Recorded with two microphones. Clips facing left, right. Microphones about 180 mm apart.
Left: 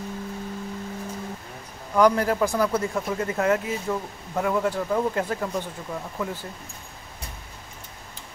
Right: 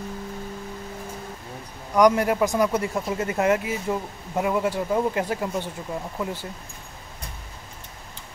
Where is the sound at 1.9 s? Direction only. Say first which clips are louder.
Right 1 dB; 15° right (ahead or behind).